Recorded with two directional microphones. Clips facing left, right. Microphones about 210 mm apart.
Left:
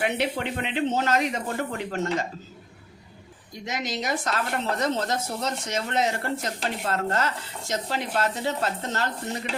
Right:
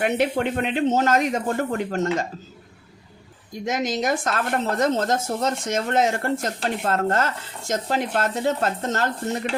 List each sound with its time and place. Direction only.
0.0 s speech: 50° right (ahead or behind)
3.7 s speech: 50° right (ahead or behind)